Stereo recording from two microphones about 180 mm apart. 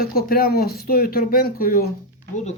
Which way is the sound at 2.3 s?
40° left (ahead or behind).